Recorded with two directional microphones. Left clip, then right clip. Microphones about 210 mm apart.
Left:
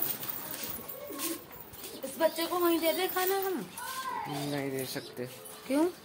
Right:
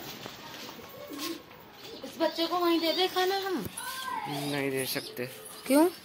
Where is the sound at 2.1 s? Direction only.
25° right (ahead or behind).